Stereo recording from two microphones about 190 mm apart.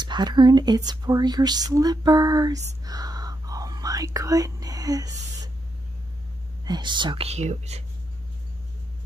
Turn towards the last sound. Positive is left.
turn(degrees=-35)  # may be behind; listen again after turning